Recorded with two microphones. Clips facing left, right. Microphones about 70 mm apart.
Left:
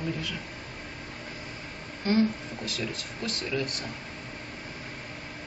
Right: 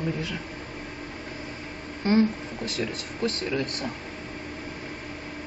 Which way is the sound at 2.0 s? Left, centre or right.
Right.